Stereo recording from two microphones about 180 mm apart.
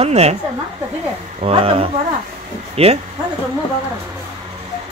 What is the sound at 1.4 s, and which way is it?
Speech, 30° right (ahead or behind).